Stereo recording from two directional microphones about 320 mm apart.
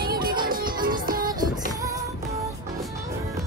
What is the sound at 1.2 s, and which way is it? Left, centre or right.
Music, centre.